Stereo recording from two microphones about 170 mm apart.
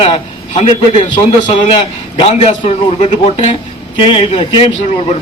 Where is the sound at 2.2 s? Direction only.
40° left (ahead or behind).